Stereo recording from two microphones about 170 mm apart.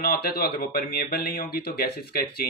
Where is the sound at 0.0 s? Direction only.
60° left (ahead or behind).